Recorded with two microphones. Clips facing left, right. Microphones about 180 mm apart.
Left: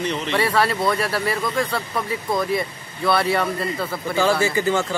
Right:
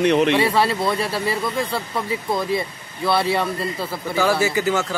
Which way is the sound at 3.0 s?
25° right (ahead or behind).